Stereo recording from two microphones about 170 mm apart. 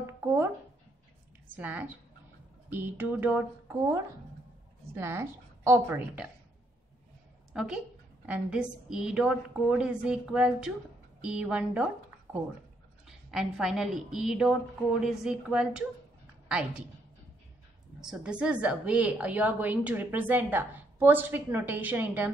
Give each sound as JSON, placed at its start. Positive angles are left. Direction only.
{"t": 0.0, "sound": "a sound", "side_deg": -15}
{"t": 1.6, "sound": "a woman's voice", "side_deg": -10}
{"t": 7.5, "sound": "a woman's voice", "side_deg": -5}
{"t": 13.0, "sound": "a woman's voice", "side_deg": 0}
{"t": 18.0, "sound": "a woman's voice", "side_deg": -5}